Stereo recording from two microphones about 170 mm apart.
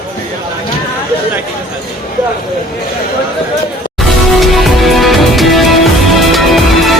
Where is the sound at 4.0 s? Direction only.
Centre (ahead or behind).